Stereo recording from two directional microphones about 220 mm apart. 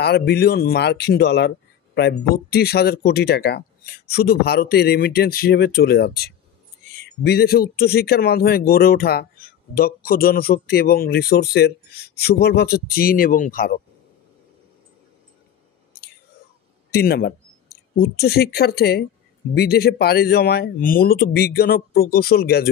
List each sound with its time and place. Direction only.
0.0 s speech: 45° left (ahead or behind)
16.9 s speech: 45° left (ahead or behind)